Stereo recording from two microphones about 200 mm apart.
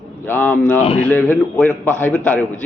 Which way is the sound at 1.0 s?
10° left (ahead or behind).